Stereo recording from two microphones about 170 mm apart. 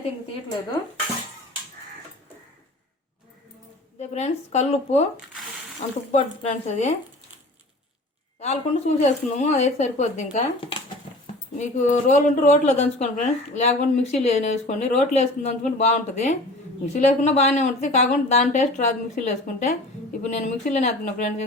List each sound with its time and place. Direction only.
4.0 s a woman's voice: 40° left (ahead or behind)
8.4 s a woman's voice: 40° left (ahead or behind)
10.3 s speech: 30° left (ahead or behind)
11.5 s a woman's voice: 45° left (ahead or behind)